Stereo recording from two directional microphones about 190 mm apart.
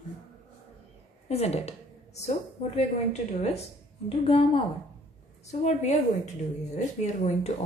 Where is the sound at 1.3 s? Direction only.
35° left (ahead or behind).